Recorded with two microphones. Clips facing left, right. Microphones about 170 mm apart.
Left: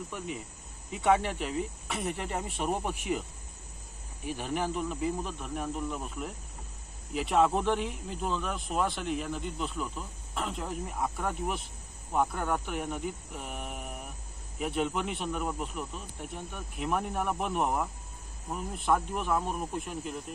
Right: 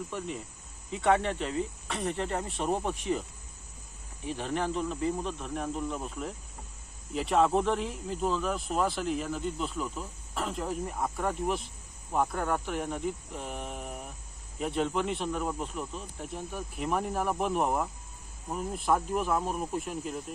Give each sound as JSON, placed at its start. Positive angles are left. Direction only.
{"t": 0.9, "sound": "speech", "side_deg": 5}
{"t": 4.4, "sound": "speech", "side_deg": 5}